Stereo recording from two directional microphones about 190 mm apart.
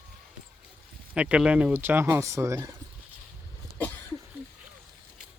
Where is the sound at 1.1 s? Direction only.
5° right (ahead or behind).